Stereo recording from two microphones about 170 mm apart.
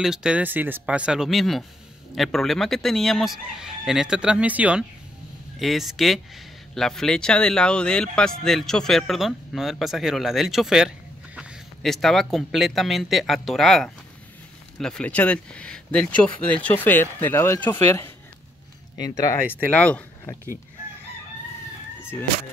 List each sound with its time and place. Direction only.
0.0 s speech: 5° right (ahead or behind)